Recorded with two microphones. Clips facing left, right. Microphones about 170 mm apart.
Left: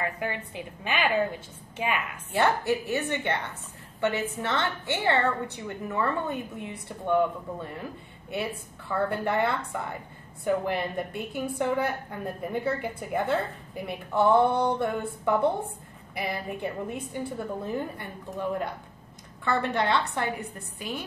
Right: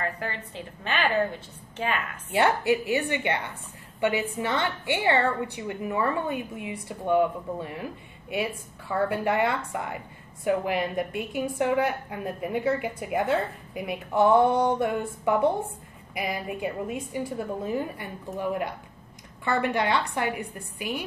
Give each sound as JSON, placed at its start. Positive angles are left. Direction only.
{"t": 0.0, "sound": "a woman's voice", "side_deg": 15}
{"t": 2.3, "sound": "speech", "side_deg": -10}